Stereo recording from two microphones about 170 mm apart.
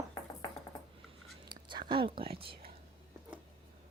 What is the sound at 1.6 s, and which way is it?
Speech, 30° right (ahead or behind).